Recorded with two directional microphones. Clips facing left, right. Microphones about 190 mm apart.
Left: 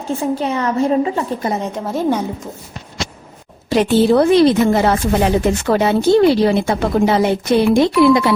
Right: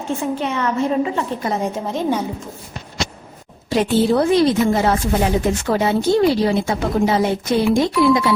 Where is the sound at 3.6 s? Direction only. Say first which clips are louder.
Left 3 dB; 70° left (ahead or behind).